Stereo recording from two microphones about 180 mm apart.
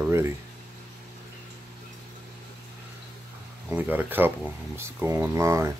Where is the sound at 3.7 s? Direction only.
10° right (ahead or behind).